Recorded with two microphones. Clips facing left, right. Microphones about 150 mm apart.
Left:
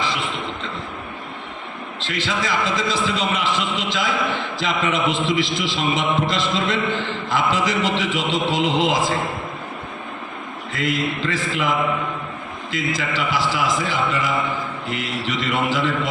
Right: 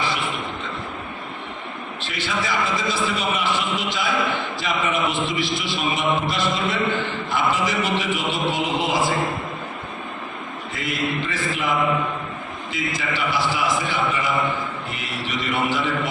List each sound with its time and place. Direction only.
2.0 s a man's voice: 90° left
10.7 s a man's voice: 90° left
12.7 s a man's voice: 90° left